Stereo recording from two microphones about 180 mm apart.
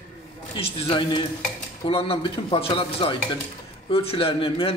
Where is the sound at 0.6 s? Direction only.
30° left (ahead or behind).